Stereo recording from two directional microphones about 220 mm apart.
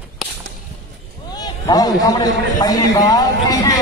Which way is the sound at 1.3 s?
15° left (ahead or behind).